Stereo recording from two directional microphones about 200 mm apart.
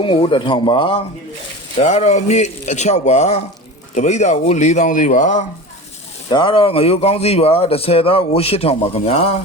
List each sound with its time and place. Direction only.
0.0 s a man's voice: 25° left (ahead or behind)
6.2 s a man's voice: 25° left (ahead or behind)